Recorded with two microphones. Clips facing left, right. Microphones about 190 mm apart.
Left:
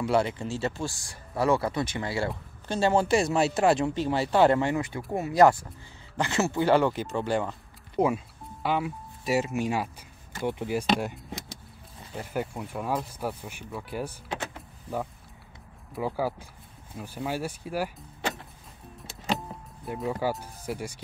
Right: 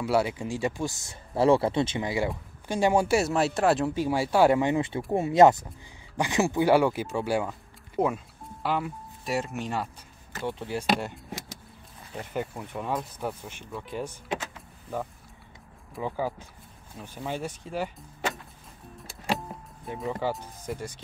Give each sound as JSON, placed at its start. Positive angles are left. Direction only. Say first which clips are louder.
{"t": 0.0, "sound": "speech", "louder": "even", "side_deg": -5}
{"t": 4.7, "sound": "speech", "louder": "right 3 dB", "side_deg": -25}
{"t": 15.9, "sound": "speech", "louder": "left 2 dB", "side_deg": 5}
{"t": 18.9, "sound": "music", "louder": "even", "side_deg": 0}
{"t": 19.9, "sound": "speech", "louder": "left 1 dB", "side_deg": 5}